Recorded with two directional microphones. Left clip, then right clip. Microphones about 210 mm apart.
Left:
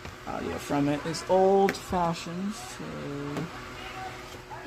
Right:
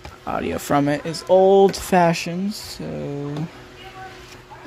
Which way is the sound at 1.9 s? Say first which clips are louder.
Right 11 dB; 40° right (ahead or behind).